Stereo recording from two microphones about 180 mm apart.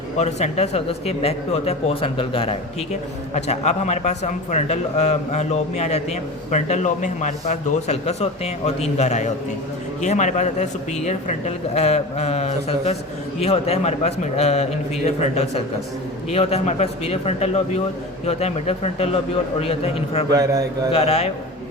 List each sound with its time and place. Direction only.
0.2 s a man's voice: 40° left (ahead or behind)
20.3 s a man's voice: 20° right (ahead or behind)
20.9 s a man's voice: 35° left (ahead or behind)